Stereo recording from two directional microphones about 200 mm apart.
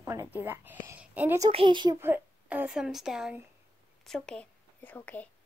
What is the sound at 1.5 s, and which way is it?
Speech, 25° right (ahead or behind).